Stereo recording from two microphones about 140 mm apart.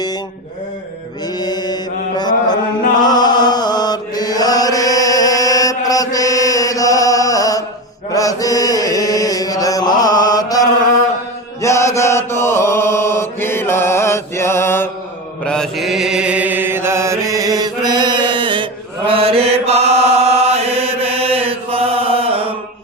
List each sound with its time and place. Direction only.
1.4 s mantra: 30° left (ahead or behind)
8.1 s chant: 25° left (ahead or behind)
10.0 s mantra: 30° left (ahead or behind)
11.6 s chant: 20° left (ahead or behind)
15.4 s mantra: 5° left (ahead or behind); by 22.5 s 40° right (ahead or behind)